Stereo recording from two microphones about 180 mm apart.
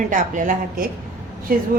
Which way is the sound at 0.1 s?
45° right (ahead or behind).